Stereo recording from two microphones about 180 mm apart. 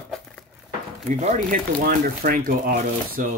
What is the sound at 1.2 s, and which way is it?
Speech, 45° right (ahead or behind).